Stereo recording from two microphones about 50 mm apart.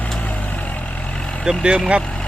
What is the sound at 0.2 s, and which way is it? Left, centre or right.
Vehicle, left.